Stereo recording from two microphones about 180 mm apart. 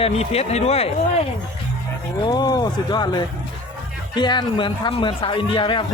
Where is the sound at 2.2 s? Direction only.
20° left (ahead or behind).